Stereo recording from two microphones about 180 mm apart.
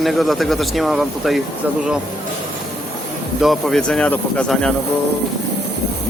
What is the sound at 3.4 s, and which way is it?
Speech, centre (ahead or behind).